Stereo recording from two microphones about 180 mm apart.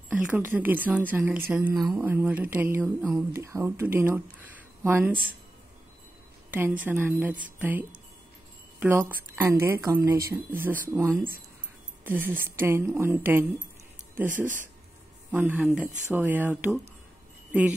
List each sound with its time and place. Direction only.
0.1 s speech: 10° right (ahead or behind)
6.5 s speech: 10° right (ahead or behind)